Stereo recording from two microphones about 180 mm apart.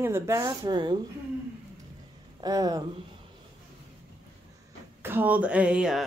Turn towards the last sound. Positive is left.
turn(degrees=-5)  # may be behind; listen again after turning